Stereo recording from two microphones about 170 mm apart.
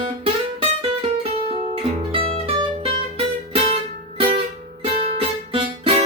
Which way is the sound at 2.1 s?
35° right (ahead or behind).